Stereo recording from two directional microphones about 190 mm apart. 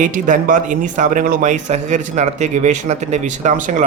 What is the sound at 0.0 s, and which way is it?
Speech, 45° right (ahead or behind).